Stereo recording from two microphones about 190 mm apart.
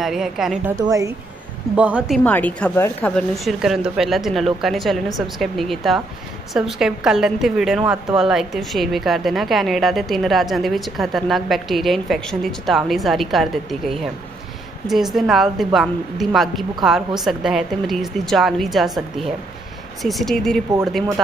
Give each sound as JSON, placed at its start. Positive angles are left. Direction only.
{"t": 0.0, "sound": "a woman's voice", "side_deg": 0}
{"t": 0.7, "sound": "speech", "side_deg": -15}
{"t": 1.8, "sound": "speech", "side_deg": -5}
{"t": 2.2, "sound": "a woman's voice", "side_deg": 10}